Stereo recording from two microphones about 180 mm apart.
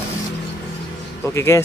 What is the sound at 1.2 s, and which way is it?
Speech, 15° left (ahead or behind).